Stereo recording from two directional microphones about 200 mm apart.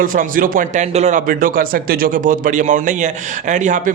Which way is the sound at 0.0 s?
45° right (ahead or behind).